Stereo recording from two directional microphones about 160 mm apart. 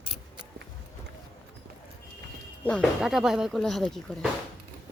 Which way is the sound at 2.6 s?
Centre (ahead or behind).